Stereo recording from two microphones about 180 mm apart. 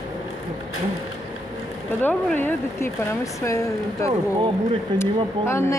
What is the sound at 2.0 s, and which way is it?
Speech, 10° left (ahead or behind).